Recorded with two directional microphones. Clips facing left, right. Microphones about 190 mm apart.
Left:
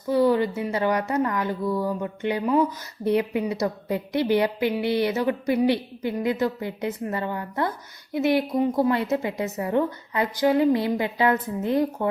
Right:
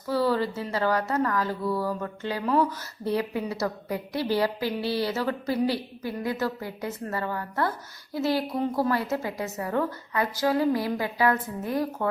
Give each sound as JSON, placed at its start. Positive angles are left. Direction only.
{"t": 0.1, "sound": "a woman's voice", "side_deg": 20}